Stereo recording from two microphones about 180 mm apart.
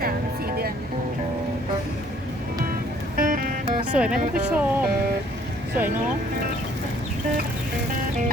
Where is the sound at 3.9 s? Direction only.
5° right (ahead or behind).